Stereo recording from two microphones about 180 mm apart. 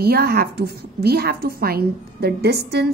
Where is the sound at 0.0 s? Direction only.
60° right (ahead or behind).